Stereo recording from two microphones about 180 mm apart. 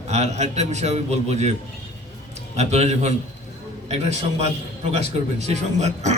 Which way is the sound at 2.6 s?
40° right (ahead or behind).